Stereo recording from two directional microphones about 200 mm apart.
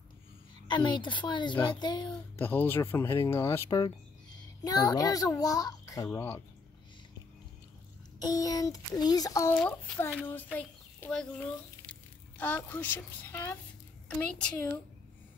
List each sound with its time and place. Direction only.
0.7 s a woman's voice: 20° left (ahead or behind)
2.3 s a child's voice: 10° left (ahead or behind)
8.2 s a child's voice: 20° left (ahead or behind)